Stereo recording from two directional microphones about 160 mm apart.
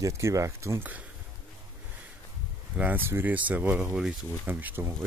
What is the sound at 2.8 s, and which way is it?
Speech, 10° right (ahead or behind).